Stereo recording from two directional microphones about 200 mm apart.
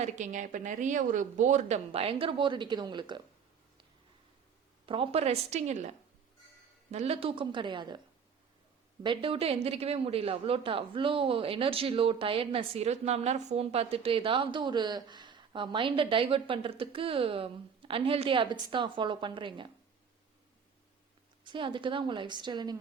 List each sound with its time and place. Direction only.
0.0 s a woman's voice: 40° right (ahead or behind); by 3.2 s 25° right (ahead or behind)
4.9 s a woman's voice: 30° right (ahead or behind)
6.9 s speech: 30° right (ahead or behind)
9.0 s speech: 25° right (ahead or behind)
21.4 s speech: 25° right (ahead or behind)